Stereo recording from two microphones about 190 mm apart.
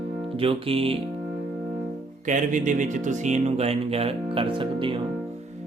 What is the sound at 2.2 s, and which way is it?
Speech, 40° right (ahead or behind).